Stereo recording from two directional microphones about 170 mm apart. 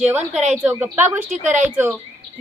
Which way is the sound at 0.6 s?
10° right (ahead or behind).